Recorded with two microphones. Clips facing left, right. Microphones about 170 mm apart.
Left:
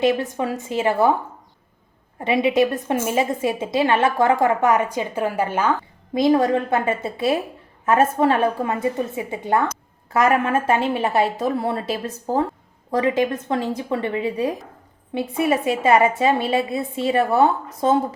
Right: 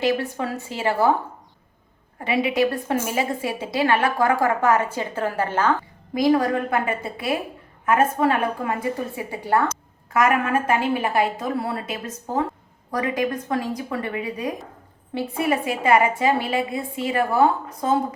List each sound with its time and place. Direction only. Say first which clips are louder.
0.0 s a woman's voice: left 3 dB; 20° left (ahead or behind)
2.1 s a woman's voice: left 4 dB; 25° left (ahead or behind)
6.1 s a woman's voice: left 2 dB; 25° left (ahead or behind)